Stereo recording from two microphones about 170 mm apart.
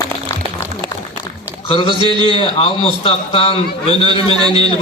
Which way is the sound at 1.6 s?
35° left (ahead or behind).